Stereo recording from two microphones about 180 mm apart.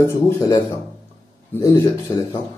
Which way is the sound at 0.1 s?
20° left (ahead or behind).